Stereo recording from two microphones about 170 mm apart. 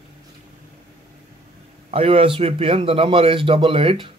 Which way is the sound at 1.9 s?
35° right (ahead or behind).